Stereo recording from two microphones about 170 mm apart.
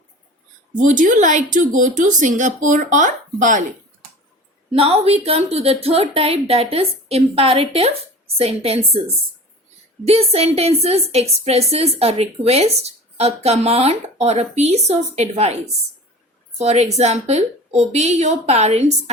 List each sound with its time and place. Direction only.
0.8 s speech: 50° right (ahead or behind)
4.7 s speech: 35° right (ahead or behind)
10.1 s speech: 35° right (ahead or behind)